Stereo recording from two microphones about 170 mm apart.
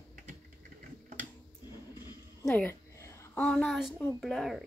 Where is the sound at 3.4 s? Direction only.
5° left (ahead or behind).